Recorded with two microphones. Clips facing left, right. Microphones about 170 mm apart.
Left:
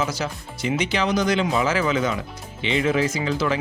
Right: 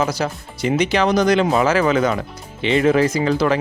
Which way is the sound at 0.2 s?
50° right (ahead or behind).